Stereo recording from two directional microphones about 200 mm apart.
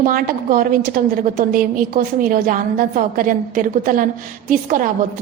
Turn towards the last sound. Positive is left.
turn(degrees=-40)  # may be behind; listen again after turning